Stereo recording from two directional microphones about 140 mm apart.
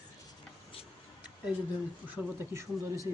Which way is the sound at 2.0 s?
15° right (ahead or behind).